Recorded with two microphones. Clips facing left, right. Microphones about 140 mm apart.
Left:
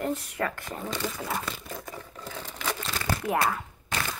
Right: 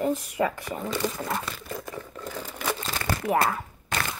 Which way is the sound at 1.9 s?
5° left (ahead or behind).